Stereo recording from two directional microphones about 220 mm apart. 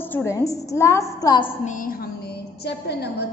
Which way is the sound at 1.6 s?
35° left (ahead or behind).